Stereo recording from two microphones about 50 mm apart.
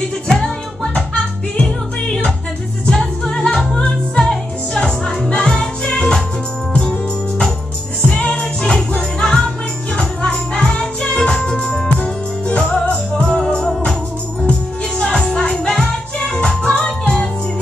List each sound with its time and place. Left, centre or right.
1.6 s music: centre
3.4 s music: centre
8.0 s jingle bell: centre
9.9 s music: centre
15.0 s music: centre